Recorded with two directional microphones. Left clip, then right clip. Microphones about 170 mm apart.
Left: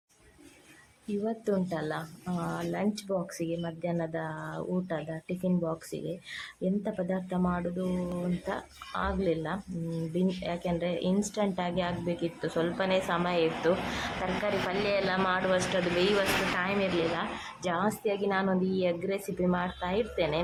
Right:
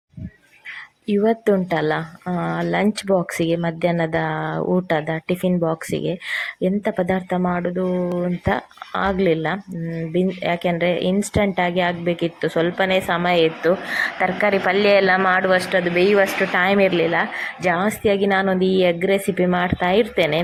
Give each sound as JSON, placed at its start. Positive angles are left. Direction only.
{"t": 1.2, "sound": "speech", "side_deg": -35}